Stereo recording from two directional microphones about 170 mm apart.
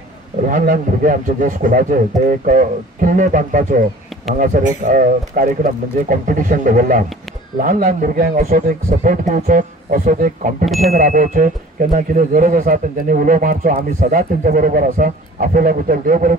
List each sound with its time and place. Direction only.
0.5 s a man's voice: 50° right (ahead or behind)
4.8 s a man's voice: 55° right (ahead or behind)
10.6 s speech: centre (ahead or behind)
10.9 s a man's voice: 55° right (ahead or behind)